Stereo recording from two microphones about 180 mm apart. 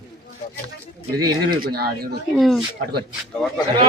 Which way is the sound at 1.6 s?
60° right (ahead or behind).